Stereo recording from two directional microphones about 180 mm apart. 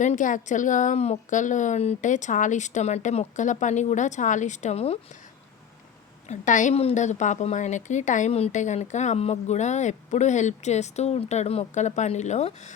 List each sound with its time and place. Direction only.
0.0 s a woman's voice: 45° left (ahead or behind)
6.2 s a woman's voice: 40° left (ahead or behind)